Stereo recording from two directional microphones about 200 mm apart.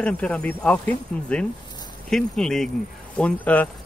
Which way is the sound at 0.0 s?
5° left (ahead or behind).